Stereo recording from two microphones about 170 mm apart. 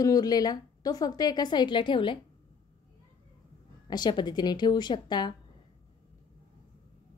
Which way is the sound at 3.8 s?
25° left (ahead or behind).